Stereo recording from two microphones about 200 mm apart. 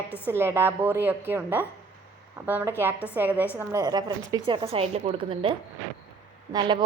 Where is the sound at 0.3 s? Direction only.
10° right (ahead or behind).